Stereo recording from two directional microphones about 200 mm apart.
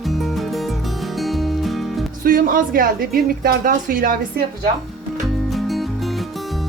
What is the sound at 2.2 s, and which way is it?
A woman's voice, 45° right (ahead or behind).